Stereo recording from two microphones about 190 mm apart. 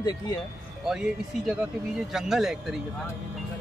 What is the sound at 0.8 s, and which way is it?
Speech, 5° right (ahead or behind).